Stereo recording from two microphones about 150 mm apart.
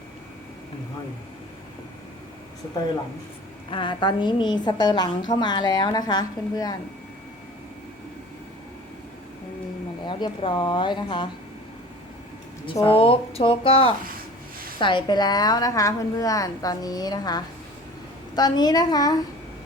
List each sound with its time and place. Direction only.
3.7 s a woman's voice: 35° left (ahead or behind)
10.1 s speech: 30° left (ahead or behind)
12.8 s a woman's voice: 40° left (ahead or behind)